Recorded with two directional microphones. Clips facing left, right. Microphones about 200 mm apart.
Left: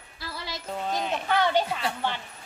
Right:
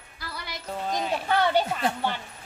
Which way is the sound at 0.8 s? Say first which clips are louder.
Right 1 dB; centre (ahead or behind).